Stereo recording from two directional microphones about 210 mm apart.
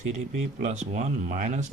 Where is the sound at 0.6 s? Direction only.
35° right (ahead or behind).